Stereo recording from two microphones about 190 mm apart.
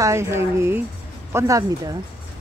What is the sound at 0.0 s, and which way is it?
Speech, 15° right (ahead or behind).